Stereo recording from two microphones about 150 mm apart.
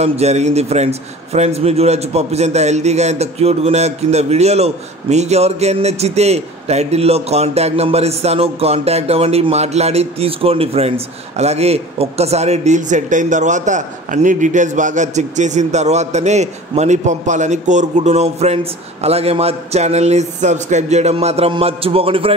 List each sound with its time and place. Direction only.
0.0 s a man's voice: 45° right (ahead or behind)